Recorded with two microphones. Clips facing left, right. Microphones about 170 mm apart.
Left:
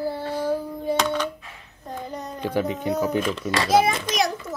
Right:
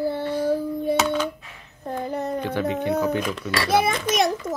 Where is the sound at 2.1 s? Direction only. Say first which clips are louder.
Right 7 dB; 60° right (ahead or behind).